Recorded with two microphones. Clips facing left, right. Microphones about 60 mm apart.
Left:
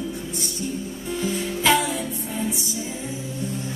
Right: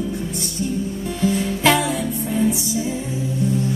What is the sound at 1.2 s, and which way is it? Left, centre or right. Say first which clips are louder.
Music: right 6 dB; right.